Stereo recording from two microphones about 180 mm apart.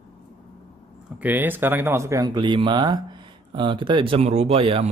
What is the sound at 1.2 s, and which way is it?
Speech, 10° right (ahead or behind).